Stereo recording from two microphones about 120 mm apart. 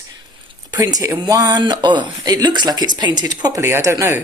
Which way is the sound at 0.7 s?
30° right (ahead or behind).